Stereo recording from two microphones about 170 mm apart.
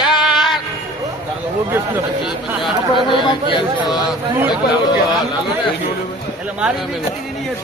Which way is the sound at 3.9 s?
Centre (ahead or behind).